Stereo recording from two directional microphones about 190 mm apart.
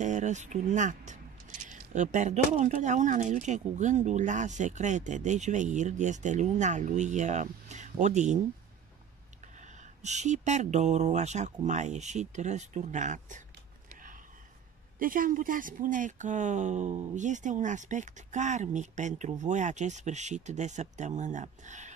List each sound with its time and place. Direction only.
0.0 s speech: 40° right (ahead or behind)
9.6 s speech: 40° right (ahead or behind)
15.0 s speech: 45° right (ahead or behind)